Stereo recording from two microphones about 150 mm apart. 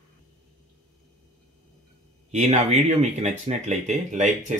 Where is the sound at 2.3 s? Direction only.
50° right (ahead or behind).